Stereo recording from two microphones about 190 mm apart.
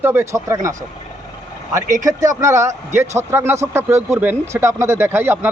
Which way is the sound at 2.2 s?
15° right (ahead or behind).